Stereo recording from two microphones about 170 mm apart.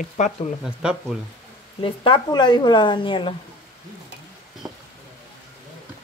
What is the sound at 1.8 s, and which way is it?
Speech, 30° left (ahead or behind).